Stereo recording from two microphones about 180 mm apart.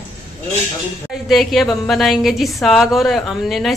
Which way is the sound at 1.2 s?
Centre (ahead or behind).